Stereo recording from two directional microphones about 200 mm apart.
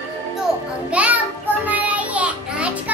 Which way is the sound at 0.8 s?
5° right (ahead or behind).